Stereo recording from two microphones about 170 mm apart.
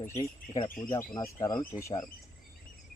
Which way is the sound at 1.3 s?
25° left (ahead or behind).